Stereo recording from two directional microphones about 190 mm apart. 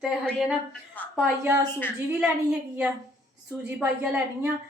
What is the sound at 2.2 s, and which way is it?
A woman's voice, 5° right (ahead or behind).